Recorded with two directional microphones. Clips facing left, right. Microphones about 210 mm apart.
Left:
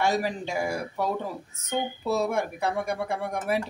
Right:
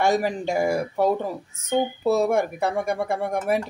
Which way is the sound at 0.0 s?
50° right (ahead or behind).